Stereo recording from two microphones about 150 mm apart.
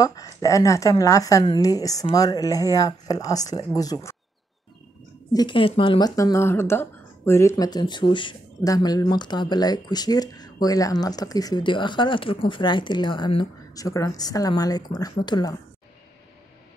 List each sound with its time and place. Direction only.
0.0 s speech: 25° left (ahead or behind)
5.3 s speech: 30° left (ahead or behind)